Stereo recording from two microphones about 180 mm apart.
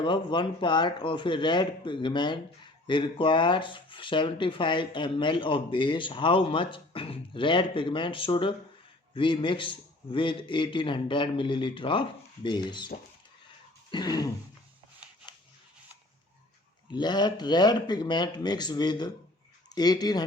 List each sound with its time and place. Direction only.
0.0 s speech: 25° left (ahead or behind)
13.9 s speech: 20° left (ahead or behind)
16.9 s speech: 25° left (ahead or behind)